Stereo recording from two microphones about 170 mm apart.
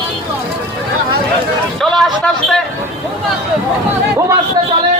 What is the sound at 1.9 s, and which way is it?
Speech, 5° left (ahead or behind).